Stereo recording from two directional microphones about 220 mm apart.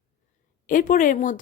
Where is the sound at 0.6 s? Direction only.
35° left (ahead or behind).